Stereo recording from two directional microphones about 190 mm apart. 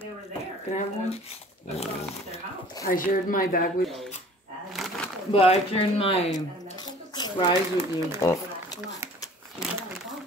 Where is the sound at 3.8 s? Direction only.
Centre (ahead or behind).